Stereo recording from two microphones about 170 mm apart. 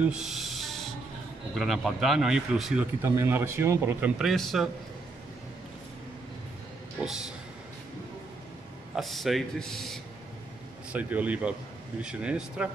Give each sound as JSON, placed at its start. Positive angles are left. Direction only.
{"t": 0.0, "sound": "music", "side_deg": -5}
{"t": 1.5, "sound": "speech", "side_deg": 0}
{"t": 4.2, "sound": "speech", "side_deg": 0}
{"t": 8.9, "sound": "speech", "side_deg": 0}
{"t": 10.9, "sound": "speech", "side_deg": -10}